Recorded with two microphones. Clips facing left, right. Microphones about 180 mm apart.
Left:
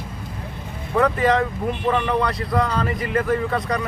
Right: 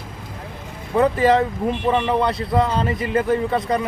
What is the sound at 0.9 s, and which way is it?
Speech, 30° right (ahead or behind).